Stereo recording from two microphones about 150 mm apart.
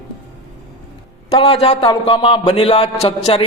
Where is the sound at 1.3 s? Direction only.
40° left (ahead or behind).